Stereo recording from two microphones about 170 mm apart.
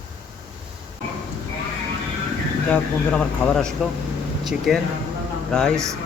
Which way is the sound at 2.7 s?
5° left (ahead or behind).